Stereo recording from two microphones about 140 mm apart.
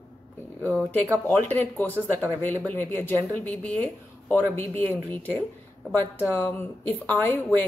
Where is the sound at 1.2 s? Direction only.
15° left (ahead or behind).